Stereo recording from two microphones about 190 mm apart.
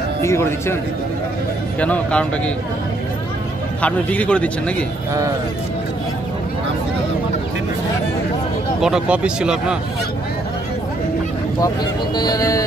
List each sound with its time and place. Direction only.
0.2 s a man's voice: 15° left (ahead or behind)
1.8 s a man's voice: 5° left (ahead or behind)
3.8 s a man's voice: 5° left (ahead or behind)
8.8 s speech: 5° right (ahead or behind)
12.2 s speech: 20° left (ahead or behind)